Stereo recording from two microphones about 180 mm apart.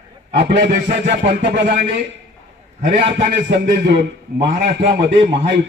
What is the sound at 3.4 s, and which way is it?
Music, 65° right (ahead or behind).